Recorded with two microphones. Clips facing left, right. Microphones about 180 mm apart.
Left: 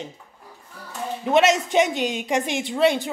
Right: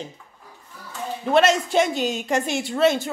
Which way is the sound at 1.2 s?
15° left (ahead or behind).